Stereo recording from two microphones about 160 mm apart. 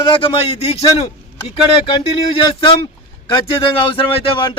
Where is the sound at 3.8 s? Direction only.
30° left (ahead or behind).